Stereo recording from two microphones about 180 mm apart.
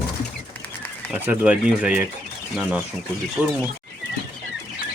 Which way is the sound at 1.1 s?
5° right (ahead or behind).